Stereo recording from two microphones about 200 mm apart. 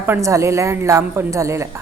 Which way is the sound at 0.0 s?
15° right (ahead or behind).